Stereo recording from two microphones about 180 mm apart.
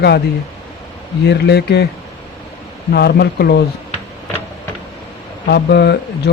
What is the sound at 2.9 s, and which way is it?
Speech, 65° left (ahead or behind).